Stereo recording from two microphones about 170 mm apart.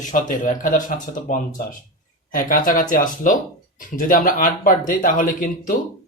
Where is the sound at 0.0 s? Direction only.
50° left (ahead or behind).